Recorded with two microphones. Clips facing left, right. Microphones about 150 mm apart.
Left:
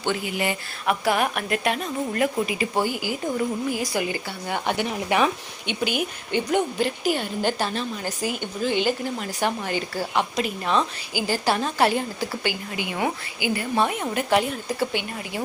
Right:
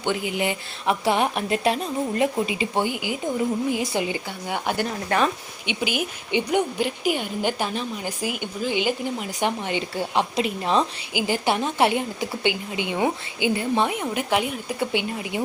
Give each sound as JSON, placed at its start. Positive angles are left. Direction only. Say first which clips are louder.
{"t": 0.0, "sound": "speech", "louder": "right 1 dB", "side_deg": -15}
{"t": 0.9, "sound": "a woman's voice", "louder": "right 1 dB", "side_deg": -25}
{"t": 4.4, "sound": "speech", "louder": "even", "side_deg": -5}
{"t": 4.9, "sound": "speech", "louder": "left 1 dB", "side_deg": 10}
{"t": 5.8, "sound": "a woman's voice", "louder": "left 1 dB", "side_deg": -5}
{"t": 14.0, "sound": "speech", "louder": "left 1 dB", "side_deg": -10}
{"t": 14.8, "sound": "a woman's voice", "louder": "right 5 dB", "side_deg": -20}